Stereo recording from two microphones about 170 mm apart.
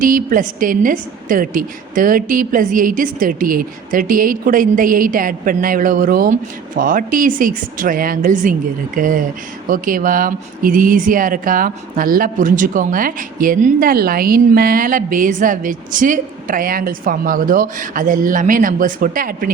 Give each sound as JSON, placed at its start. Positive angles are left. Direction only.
{"t": 0.0, "sound": "speech", "side_deg": -55}